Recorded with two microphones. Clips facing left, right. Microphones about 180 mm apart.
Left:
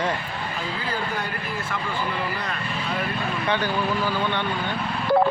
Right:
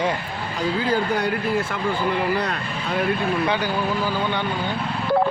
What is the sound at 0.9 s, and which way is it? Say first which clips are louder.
Speech: right 7 dB; 80° right.